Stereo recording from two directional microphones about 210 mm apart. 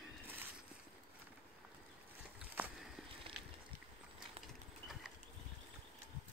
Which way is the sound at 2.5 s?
10° right (ahead or behind).